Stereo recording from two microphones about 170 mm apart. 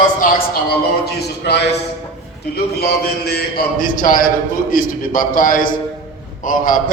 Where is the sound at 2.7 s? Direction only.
70° left (ahead or behind).